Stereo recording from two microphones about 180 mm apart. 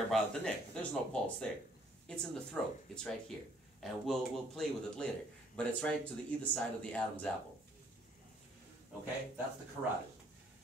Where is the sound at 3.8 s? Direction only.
Centre (ahead or behind).